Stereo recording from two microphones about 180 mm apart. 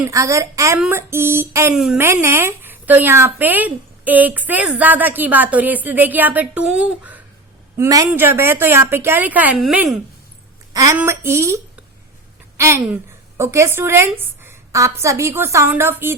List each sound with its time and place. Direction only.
0.0 s speech: 15° right (ahead or behind)
1.7 s a woman's voice: 5° right (ahead or behind)
2.0 s speech: 15° right (ahead or behind)
10.8 s a woman's voice: 15° right (ahead or behind)